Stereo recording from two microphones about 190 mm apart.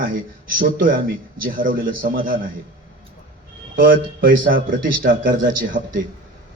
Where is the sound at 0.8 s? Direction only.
50° right (ahead or behind).